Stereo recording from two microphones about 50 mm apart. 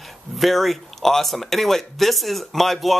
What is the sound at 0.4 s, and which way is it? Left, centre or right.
Speech, centre.